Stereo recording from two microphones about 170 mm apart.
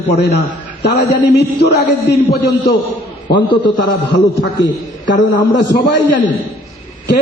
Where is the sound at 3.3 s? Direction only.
25° left (ahead or behind).